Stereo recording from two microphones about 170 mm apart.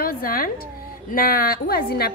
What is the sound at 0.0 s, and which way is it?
A woman's voice, 60° left (ahead or behind).